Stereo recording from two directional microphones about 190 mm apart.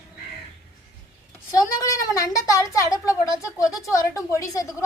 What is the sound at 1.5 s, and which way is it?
Speech, 15° left (ahead or behind).